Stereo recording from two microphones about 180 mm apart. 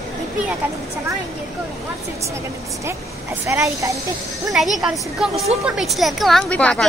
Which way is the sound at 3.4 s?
15° right (ahead or behind).